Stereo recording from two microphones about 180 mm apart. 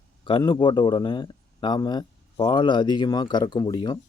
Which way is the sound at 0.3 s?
25° left (ahead or behind).